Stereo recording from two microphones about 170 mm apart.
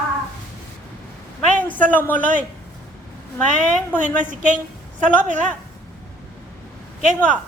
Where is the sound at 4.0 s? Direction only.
50° right (ahead or behind).